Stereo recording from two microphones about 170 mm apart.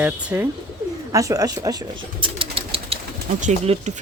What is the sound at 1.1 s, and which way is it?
Speech, 20° right (ahead or behind).